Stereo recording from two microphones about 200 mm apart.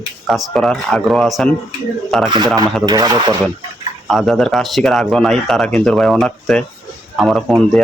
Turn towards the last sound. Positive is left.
turn(degrees=0)  # may be behind; listen again after turning